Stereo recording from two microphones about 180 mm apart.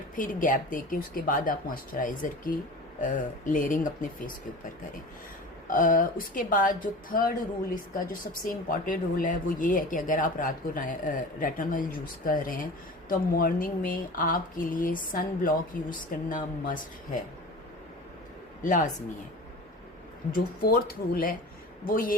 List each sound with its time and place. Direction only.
0.2 s speech: 45° left (ahead or behind)
5.6 s speech: 50° left (ahead or behind)
18.6 s speech: 45° left (ahead or behind)
20.3 s speech: 55° left (ahead or behind)